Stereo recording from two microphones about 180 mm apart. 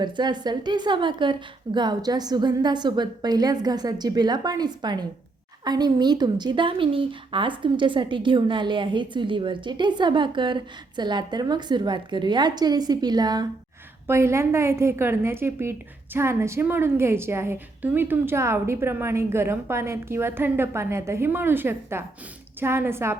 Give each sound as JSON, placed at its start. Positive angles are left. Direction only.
{"t": 0.0, "sound": "a woman's voice", "side_deg": -25}